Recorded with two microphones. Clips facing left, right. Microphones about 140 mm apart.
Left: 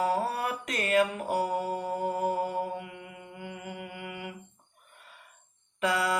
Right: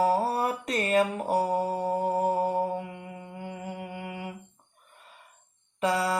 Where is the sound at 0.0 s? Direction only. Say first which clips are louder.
Right 4 dB; 35° right (ahead or behind).